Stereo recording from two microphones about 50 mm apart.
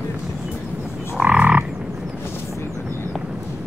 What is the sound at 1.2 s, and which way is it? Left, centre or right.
Frog, right.